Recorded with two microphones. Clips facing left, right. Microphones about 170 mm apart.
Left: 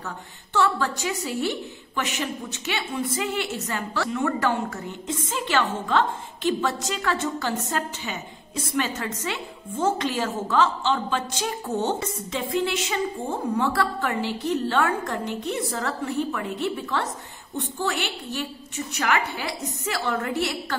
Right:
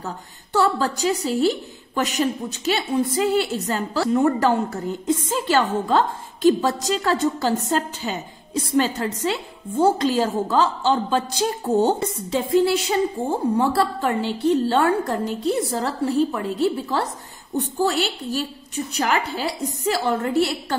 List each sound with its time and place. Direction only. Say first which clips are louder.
0.0 s a woman's voice: right 4 dB; 35° right (ahead or behind)